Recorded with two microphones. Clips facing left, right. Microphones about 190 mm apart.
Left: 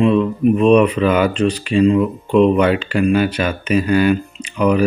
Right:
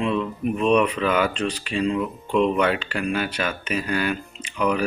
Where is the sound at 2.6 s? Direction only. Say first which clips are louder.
Left 7 dB; 10° left (ahead or behind).